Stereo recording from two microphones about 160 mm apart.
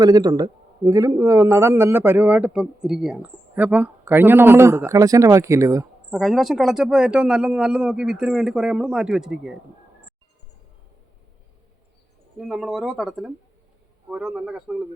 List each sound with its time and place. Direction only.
0.0 s a man's voice: 25° right (ahead or behind)
6.1 s speech: centre (ahead or behind)
12.4 s speech: 5° right (ahead or behind)